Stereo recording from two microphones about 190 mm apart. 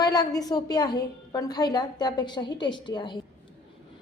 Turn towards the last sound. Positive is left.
turn(degrees=25)  # may be behind; listen again after turning